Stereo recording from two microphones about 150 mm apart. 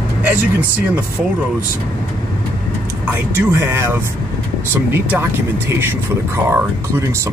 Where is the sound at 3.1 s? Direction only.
15° right (ahead or behind).